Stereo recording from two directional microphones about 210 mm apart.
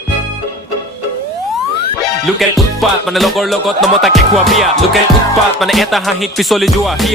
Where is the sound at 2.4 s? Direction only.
Centre (ahead or behind).